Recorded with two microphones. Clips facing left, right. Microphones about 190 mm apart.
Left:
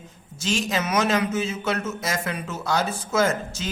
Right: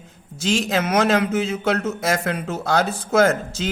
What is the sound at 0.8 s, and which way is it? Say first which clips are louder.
A man's voice: right 4 dB; 60° right (ahead or behind).